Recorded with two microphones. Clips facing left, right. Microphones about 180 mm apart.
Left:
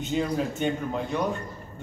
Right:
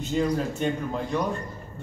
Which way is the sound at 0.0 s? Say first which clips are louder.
Right 1 dB; centre (ahead or behind).